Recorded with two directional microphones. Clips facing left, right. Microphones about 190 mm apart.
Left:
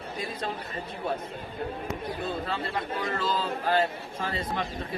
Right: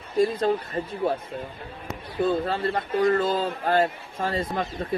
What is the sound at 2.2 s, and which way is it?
Speech, 50° right (ahead or behind).